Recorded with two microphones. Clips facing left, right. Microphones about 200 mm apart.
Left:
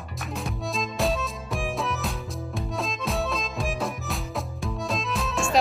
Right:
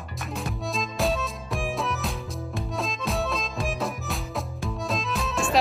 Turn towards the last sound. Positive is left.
turn(degrees=0)  # may be behind; listen again after turning